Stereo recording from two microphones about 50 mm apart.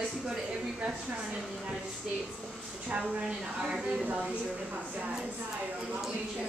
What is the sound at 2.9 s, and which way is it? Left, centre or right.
Speech, centre.